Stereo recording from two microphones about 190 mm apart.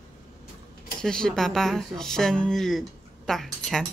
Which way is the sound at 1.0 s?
5° left (ahead or behind).